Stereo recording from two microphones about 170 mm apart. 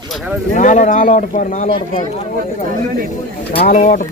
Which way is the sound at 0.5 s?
45° left (ahead or behind).